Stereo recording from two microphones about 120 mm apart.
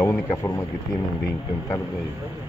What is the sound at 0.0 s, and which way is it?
Speech, 20° left (ahead or behind).